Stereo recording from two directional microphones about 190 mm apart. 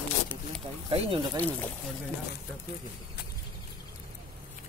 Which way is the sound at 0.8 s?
30° right (ahead or behind).